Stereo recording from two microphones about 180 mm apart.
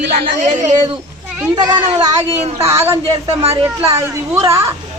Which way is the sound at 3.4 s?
35° right (ahead or behind).